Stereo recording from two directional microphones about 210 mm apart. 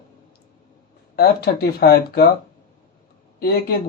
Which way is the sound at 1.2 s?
45° left (ahead or behind).